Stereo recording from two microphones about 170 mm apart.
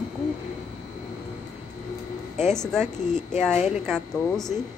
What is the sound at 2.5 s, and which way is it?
Speech, 5° left (ahead or behind).